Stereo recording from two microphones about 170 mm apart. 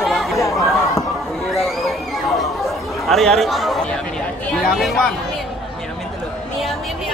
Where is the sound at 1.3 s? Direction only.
Centre (ahead or behind).